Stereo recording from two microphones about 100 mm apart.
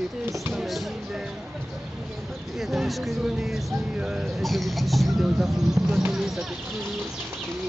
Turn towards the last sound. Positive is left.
turn(degrees=0)  # may be behind; listen again after turning